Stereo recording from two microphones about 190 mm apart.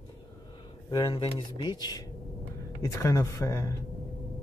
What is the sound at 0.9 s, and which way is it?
Speech, 25° left (ahead or behind).